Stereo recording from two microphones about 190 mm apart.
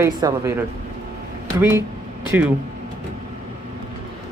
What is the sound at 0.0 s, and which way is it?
Speech, 15° right (ahead or behind).